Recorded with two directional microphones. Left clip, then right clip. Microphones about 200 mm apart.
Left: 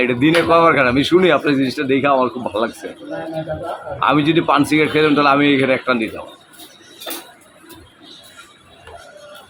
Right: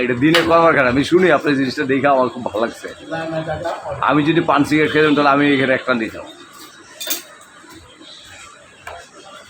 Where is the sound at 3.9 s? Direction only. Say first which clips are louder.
Left 1 dB; 5° left (ahead or behind).